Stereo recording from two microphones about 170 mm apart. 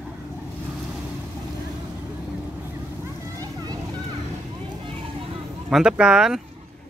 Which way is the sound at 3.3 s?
20° right (ahead or behind).